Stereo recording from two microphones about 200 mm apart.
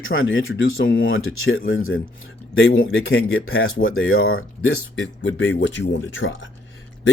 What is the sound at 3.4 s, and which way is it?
Speech, 90° left.